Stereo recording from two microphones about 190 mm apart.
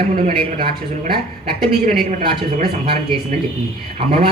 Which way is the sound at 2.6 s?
55° right (ahead or behind).